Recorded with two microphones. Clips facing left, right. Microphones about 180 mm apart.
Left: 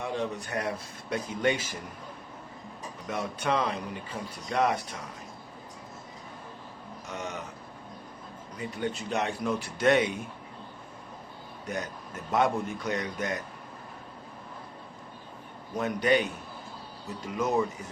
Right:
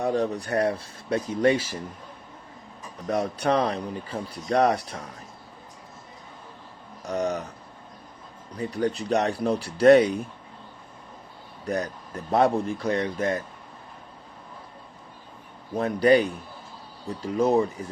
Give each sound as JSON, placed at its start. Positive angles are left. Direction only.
{"t": 0.0, "sound": "speech", "side_deg": -40}
{"t": 3.1, "sound": "speech", "side_deg": -35}
{"t": 7.0, "sound": "speech", "side_deg": -35}
{"t": 8.5, "sound": "speech", "side_deg": -35}
{"t": 11.6, "sound": "speech", "side_deg": -35}
{"t": 15.7, "sound": "speech", "side_deg": -35}